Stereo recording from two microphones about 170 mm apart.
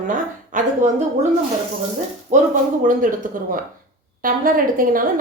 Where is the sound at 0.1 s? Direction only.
50° right (ahead or behind).